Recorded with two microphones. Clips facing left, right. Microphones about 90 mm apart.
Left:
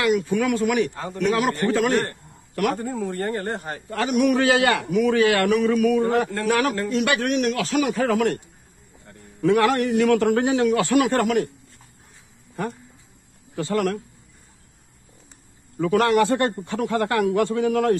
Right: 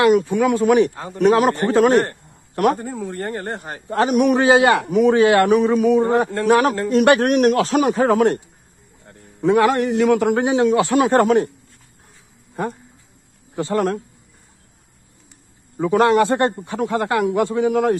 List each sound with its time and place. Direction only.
0.0 s a man's voice: 40° right (ahead or behind)
0.3 s a man's voice: 25° right (ahead or behind)
6.9 s a man's voice: 45° right (ahead or behind)
9.4 s a man's voice: 20° right (ahead or behind)
13.6 s a man's voice: 25° right (ahead or behind)
15.8 s a man's voice: 25° right (ahead or behind)